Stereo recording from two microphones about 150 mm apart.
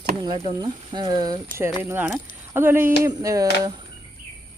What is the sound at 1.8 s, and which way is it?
Speech, 15° right (ahead or behind).